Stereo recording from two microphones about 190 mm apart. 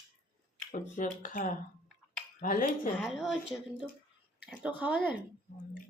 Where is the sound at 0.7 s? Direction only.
40° left (ahead or behind).